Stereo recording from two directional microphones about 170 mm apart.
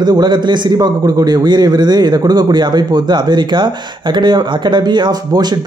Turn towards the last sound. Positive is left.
turn(degrees=-25)  # may be behind; listen again after turning